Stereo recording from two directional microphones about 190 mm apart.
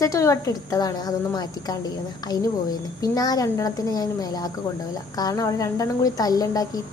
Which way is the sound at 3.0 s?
20° left (ahead or behind).